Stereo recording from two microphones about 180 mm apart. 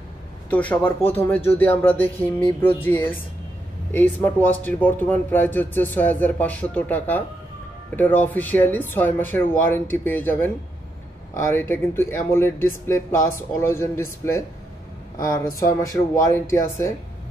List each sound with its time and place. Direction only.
0.5 s speech: 10° left (ahead or behind)